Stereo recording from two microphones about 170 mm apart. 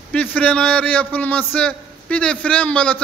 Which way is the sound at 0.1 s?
10° left (ahead or behind).